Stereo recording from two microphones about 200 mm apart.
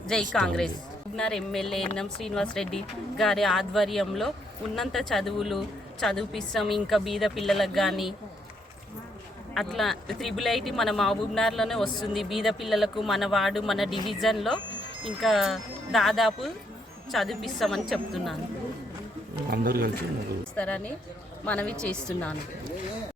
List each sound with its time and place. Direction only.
0.1 s speech: 5° left (ahead or behind)
9.6 s speech: centre (ahead or behind)
19.5 s speech: 50° right (ahead or behind)
20.6 s a woman's voice: 5° left (ahead or behind)